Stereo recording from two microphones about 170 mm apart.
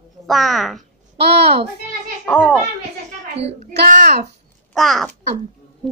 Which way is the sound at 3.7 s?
55° right (ahead or behind).